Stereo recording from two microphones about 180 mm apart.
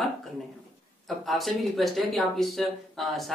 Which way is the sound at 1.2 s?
Centre (ahead or behind).